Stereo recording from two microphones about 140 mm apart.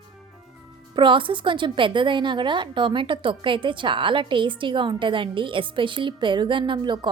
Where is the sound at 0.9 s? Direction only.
35° right (ahead or behind).